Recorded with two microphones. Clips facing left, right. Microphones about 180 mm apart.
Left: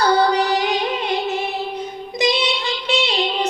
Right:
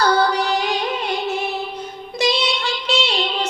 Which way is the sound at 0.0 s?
15° left (ahead or behind).